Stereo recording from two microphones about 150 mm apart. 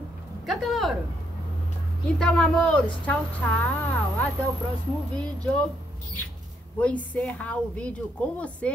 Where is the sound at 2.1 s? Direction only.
5° left (ahead or behind).